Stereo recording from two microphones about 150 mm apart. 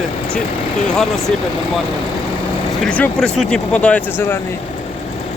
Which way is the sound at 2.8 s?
5° left (ahead or behind).